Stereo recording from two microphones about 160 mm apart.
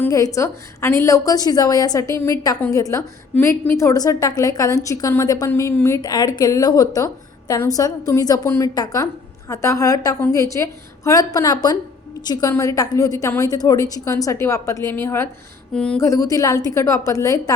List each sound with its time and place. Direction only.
0.1 s a woman's voice: 20° left (ahead or behind)
15.7 s a sound: 5° left (ahead or behind)
16.0 s a woman's voice: 20° left (ahead or behind)